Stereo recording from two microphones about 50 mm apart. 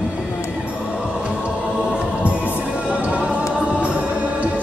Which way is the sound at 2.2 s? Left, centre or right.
Right.